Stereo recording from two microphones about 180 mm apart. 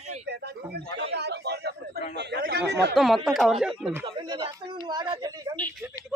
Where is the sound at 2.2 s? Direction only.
65° right (ahead or behind).